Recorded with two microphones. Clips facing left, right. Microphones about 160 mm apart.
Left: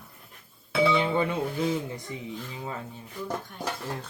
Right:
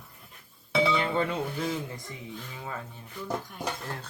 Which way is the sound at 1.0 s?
10° left (ahead or behind).